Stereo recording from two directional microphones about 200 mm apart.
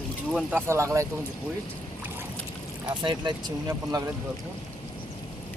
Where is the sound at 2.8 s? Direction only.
25° right (ahead or behind).